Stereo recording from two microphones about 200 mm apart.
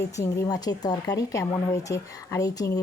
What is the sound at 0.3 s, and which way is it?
Speech, 20° left (ahead or behind).